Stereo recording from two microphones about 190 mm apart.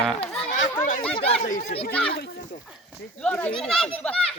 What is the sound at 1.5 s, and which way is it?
Speech, 45° left (ahead or behind).